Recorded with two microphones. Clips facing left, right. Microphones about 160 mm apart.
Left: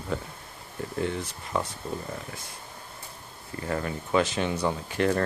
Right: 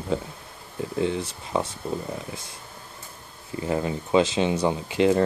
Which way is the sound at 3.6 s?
20° right (ahead or behind).